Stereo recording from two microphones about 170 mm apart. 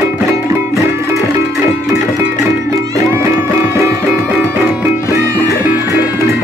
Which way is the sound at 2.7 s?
20° right (ahead or behind).